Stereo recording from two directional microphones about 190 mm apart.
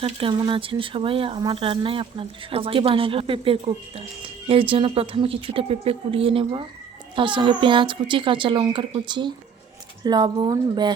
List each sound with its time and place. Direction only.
0.0 s speech: 25° right (ahead or behind)